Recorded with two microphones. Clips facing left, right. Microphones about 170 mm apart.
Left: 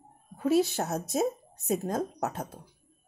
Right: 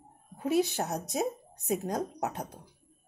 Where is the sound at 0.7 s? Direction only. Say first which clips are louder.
Left 3 dB; 15° right (ahead or behind).